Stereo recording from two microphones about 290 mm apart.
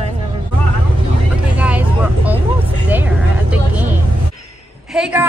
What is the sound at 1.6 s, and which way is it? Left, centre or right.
A woman's voice, centre.